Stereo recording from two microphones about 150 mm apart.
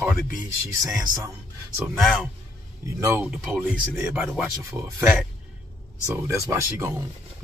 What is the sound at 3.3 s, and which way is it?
Speech, 5° right (ahead or behind).